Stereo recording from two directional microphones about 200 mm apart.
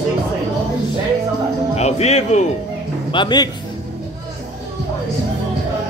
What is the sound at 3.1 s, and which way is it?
Speech, 20° left (ahead or behind).